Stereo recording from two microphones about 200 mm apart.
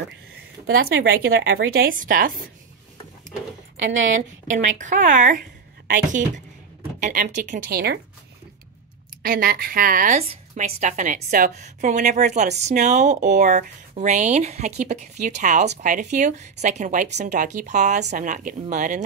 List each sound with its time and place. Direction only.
0.7 s a woman's voice: 75° right (ahead or behind)
1.8 s a woman's voice: 45° right (ahead or behind)
3.7 s speech: 75° right (ahead or behind)
4.7 s a woman's voice: 40° right (ahead or behind); by 8.0 s 55° right (ahead or behind)
9.2 s a woman's voice: 50° right (ahead or behind)